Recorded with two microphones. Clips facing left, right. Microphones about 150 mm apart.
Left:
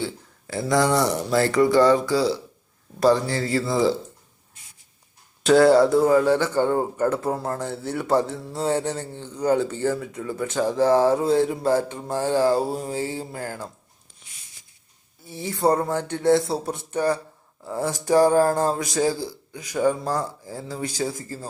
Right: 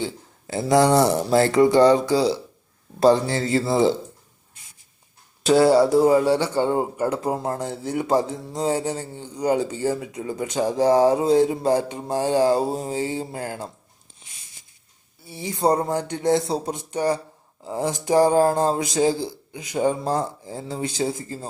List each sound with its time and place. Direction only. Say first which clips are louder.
0.0 s speech: right 1 dB; 20° right (ahead or behind)
5.5 s a man's voice: left 1 dB; 5° right (ahead or behind); by 13.7 s 20° right (ahead or behind)
15.3 s a man's voice: even; 15° right (ahead or behind)